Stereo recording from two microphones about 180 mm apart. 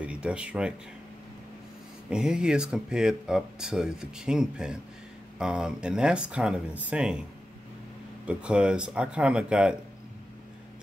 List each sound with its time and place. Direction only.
0.0 s speech: 5° right (ahead or behind)
2.0 s speech: 5° right (ahead or behind)
8.3 s speech: 5° right (ahead or behind)